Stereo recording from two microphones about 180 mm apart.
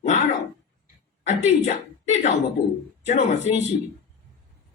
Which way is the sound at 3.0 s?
40° left (ahead or behind).